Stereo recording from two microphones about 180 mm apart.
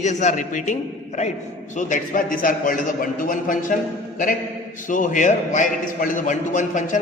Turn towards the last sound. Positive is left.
turn(degrees=45)  # may be behind; listen again after turning